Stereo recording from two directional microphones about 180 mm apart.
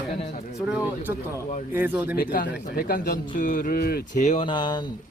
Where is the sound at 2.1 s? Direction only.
55° left (ahead or behind).